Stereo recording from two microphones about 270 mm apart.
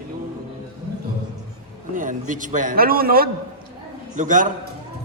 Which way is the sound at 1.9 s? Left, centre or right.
Right.